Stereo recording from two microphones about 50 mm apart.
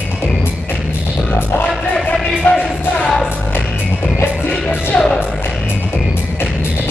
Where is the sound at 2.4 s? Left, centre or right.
Left.